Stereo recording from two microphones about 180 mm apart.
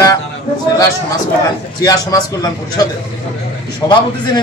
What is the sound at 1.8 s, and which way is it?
Speech, 20° left (ahead or behind).